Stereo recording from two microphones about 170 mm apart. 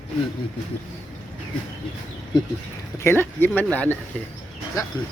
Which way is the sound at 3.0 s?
15° left (ahead or behind).